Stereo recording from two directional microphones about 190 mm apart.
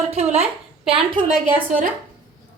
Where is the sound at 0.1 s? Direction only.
35° right (ahead or behind).